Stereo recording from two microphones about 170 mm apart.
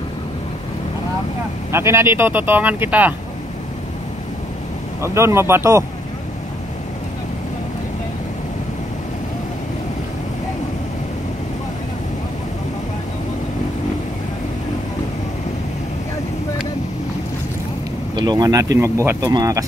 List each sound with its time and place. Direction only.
1.7 s speech: 15° right (ahead or behind)
5.0 s speech: 15° right (ahead or behind)
18.1 s speech: 25° right (ahead or behind)